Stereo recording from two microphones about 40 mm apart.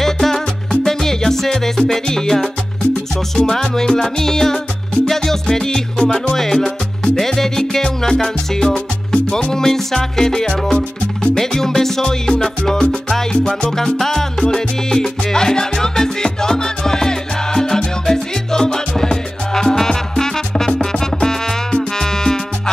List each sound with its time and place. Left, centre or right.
0.0 s music: centre
2.8 s music: left
6.3 s music: centre